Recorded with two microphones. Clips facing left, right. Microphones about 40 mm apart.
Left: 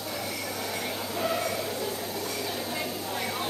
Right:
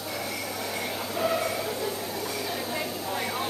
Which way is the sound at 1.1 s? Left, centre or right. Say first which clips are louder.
Right 2 dB; centre.